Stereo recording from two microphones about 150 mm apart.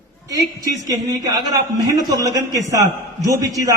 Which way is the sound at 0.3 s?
25° right (ahead or behind).